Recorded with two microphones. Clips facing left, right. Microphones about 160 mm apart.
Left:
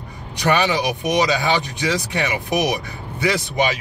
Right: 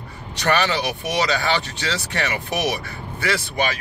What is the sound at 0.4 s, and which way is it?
Speech, 10° left (ahead or behind).